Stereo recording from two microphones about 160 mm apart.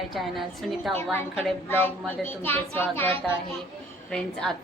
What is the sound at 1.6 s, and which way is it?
A woman's voice, 15° left (ahead or behind).